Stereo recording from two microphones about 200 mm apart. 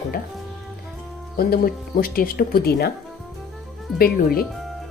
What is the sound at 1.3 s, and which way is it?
Speech, 45° left (ahead or behind).